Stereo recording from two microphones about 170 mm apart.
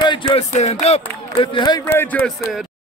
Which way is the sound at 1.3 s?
25° left (ahead or behind).